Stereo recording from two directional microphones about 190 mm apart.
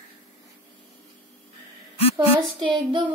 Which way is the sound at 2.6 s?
25° right (ahead or behind).